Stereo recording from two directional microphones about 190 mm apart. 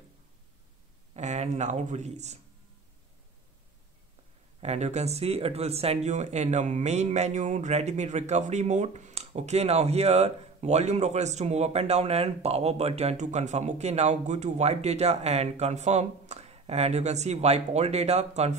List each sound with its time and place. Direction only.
1.1 s speech: 35° right (ahead or behind)
4.6 s speech: 35° right (ahead or behind)